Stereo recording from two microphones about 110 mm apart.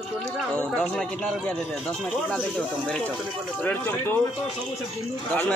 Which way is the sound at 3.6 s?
20° left (ahead or behind).